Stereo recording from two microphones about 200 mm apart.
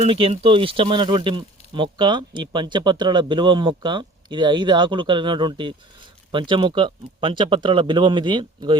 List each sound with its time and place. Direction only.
0.0 s speech: 30° right (ahead or behind)